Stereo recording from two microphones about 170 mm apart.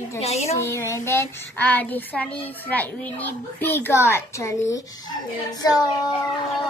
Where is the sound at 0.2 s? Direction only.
40° left (ahead or behind).